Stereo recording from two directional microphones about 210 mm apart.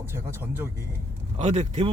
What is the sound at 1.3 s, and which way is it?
Speech, 35° right (ahead or behind).